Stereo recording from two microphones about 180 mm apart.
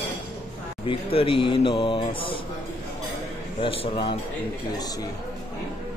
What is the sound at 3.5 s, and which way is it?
Speech, 30° left (ahead or behind).